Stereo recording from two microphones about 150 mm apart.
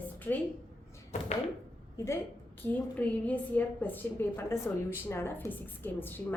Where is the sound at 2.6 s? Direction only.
10° left (ahead or behind).